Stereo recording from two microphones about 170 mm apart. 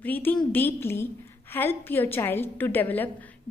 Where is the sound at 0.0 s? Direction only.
10° left (ahead or behind).